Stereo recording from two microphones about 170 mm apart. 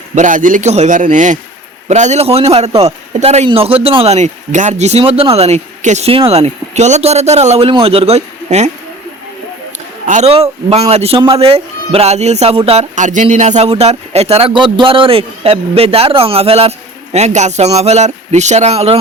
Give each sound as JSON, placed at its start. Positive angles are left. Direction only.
{"t": 0.2, "sound": "a man's voice", "side_deg": -50}
{"t": 10.1, "sound": "a man's voice", "side_deg": -40}